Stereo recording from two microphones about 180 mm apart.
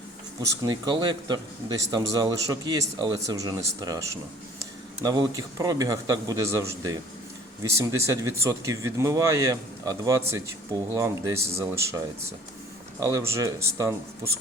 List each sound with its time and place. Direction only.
0.6 s speech: 25° right (ahead or behind)
13.0 s speech: 15° right (ahead or behind)